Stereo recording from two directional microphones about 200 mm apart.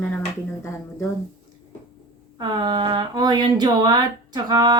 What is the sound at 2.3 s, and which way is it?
Speech, 20° right (ahead or behind).